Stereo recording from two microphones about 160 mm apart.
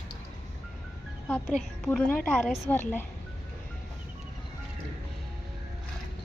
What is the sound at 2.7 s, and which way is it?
Speech, 10° left (ahead or behind).